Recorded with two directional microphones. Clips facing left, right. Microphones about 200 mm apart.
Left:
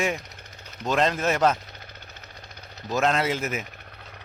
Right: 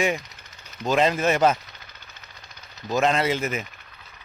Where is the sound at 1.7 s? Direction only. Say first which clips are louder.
Left 4 dB; 55° left (ahead or behind).